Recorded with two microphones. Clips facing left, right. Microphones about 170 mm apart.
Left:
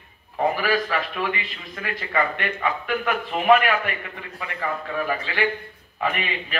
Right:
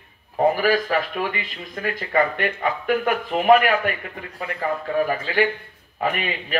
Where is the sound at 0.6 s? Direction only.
40° right (ahead or behind).